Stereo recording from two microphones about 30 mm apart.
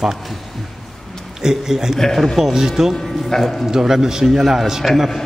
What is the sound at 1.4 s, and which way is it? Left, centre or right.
Speech, centre.